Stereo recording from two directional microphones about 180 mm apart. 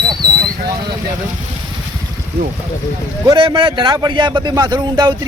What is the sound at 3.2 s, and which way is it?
A man's voice, 25° right (ahead or behind).